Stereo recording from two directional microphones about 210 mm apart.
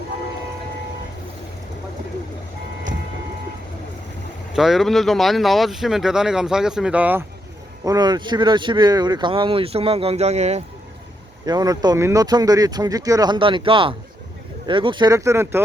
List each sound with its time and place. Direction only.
4.5 s speech: centre (ahead or behind)
7.9 s speech: 20° right (ahead or behind)
11.4 s speech: 20° right (ahead or behind)